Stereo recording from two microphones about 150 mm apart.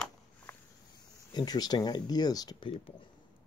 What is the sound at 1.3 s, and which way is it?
Speech, 25° left (ahead or behind).